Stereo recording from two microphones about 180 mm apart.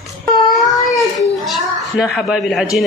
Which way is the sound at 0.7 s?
20° left (ahead or behind).